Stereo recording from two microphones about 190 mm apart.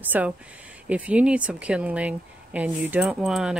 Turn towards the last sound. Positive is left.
turn(degrees=0)  # may be behind; listen again after turning